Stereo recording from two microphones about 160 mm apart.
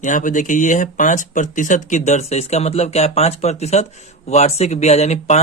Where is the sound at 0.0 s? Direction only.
55° left (ahead or behind).